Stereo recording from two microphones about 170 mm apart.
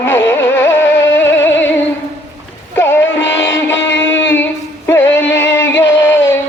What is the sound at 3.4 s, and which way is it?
Music, 15° left (ahead or behind).